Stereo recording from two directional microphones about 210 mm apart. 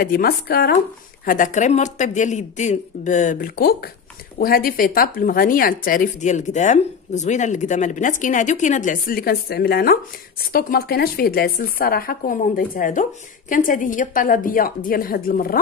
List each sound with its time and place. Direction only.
0.0 s speech: 45° left (ahead or behind)